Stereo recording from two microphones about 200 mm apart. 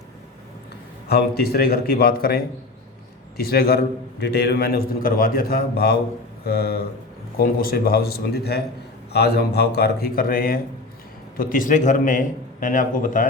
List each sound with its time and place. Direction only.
1.0 s a man's voice: 50° left (ahead or behind)